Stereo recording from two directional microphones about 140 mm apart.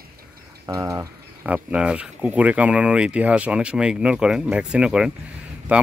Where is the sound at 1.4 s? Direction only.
10° right (ahead or behind).